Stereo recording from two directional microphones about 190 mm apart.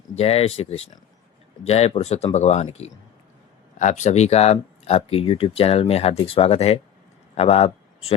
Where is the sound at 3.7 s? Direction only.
40° left (ahead or behind).